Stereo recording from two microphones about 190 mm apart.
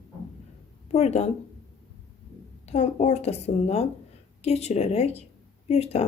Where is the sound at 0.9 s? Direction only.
35° left (ahead or behind).